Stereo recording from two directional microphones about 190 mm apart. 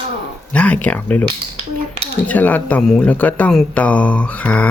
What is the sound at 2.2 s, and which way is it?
Speech, 10° left (ahead or behind).